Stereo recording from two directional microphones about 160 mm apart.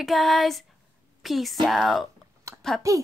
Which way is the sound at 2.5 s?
20° right (ahead or behind).